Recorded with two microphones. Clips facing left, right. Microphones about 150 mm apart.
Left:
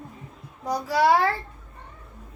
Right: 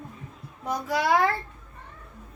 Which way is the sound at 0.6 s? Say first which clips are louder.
Left 5 dB; 35° left (ahead or behind).